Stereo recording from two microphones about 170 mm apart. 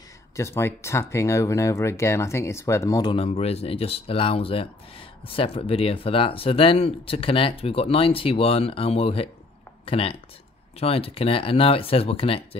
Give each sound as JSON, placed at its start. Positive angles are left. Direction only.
{"t": 0.4, "sound": "speech", "side_deg": 15}